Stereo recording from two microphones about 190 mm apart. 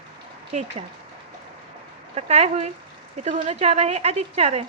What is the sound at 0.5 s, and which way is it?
Speech, 40° right (ahead or behind).